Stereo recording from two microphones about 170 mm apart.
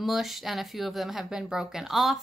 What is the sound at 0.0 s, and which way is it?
A woman's voice, centre (ahead or behind).